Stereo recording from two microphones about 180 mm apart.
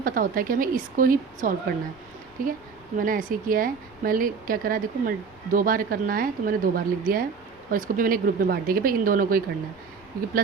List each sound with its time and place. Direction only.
0.0 s speech: 50° right (ahead or behind)